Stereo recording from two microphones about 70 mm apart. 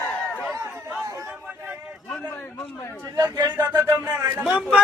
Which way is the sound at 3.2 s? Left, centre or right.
Right.